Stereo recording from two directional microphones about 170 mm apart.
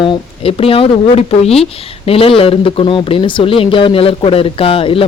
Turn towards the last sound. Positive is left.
turn(degrees=30)  # may be behind; listen again after turning